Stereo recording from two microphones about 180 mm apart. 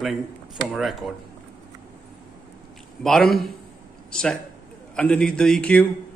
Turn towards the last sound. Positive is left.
turn(degrees=5)  # may be behind; listen again after turning